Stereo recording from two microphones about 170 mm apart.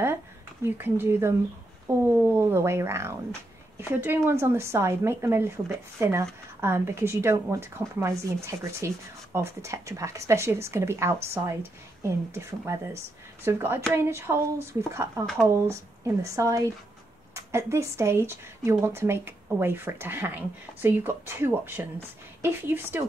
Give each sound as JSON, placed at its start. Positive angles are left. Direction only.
{"t": 0.7, "sound": "a woman's voice", "side_deg": -10}